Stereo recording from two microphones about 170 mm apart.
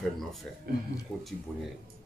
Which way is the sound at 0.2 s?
Centre (ahead or behind).